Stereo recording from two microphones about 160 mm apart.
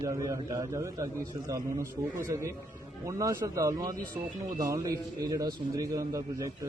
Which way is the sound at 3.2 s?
20° right (ahead or behind).